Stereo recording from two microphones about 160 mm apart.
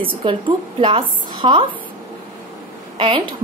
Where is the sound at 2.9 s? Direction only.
35° right (ahead or behind).